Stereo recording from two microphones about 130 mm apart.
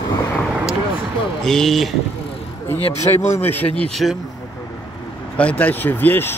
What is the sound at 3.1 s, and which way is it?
Speech, 40° left (ahead or behind).